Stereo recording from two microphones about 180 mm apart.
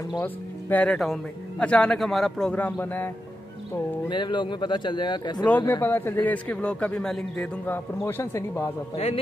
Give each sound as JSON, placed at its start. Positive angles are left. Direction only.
{"t": 0.2, "sound": "speech", "side_deg": 10}
{"t": 4.1, "sound": "a man's voice", "side_deg": 25}
{"t": 5.7, "sound": "a man's voice", "side_deg": 10}
{"t": 8.9, "sound": "a man's voice", "side_deg": 30}